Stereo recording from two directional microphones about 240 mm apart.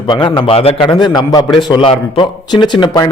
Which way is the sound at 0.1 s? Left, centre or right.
Centre.